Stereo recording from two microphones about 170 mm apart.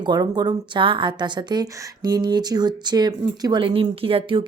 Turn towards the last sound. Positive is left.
turn(degrees=-30)  # may be behind; listen again after turning